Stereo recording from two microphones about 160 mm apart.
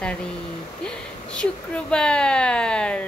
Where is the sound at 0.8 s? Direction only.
5° left (ahead or behind).